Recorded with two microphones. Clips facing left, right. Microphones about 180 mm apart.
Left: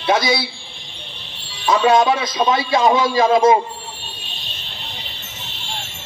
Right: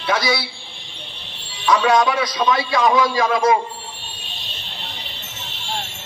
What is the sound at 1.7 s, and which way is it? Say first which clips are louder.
A man's voice: left 2 dB; 25° left (ahead or behind).